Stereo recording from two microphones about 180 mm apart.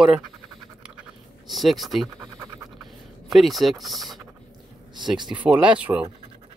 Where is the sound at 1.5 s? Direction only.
Centre (ahead or behind).